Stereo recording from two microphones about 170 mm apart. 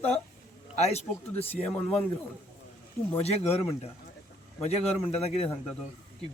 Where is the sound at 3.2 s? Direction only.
35° left (ahead or behind).